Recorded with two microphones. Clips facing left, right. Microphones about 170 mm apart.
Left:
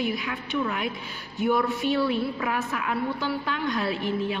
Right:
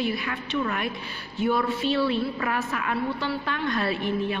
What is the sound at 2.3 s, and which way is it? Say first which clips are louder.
Speech: even; centre (ahead or behind).